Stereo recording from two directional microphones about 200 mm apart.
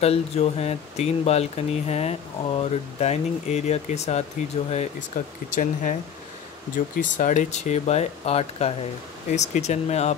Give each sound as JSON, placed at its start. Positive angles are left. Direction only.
{"t": 0.0, "sound": "speech", "side_deg": 30}
{"t": 5.2, "sound": "speech", "side_deg": 45}
{"t": 7.0, "sound": "speech", "side_deg": 40}